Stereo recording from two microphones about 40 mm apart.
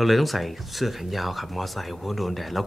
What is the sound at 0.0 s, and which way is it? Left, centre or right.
Speech, centre.